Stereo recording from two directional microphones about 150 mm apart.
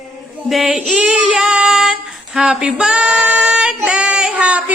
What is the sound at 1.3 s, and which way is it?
Female singing, 5° right (ahead or behind).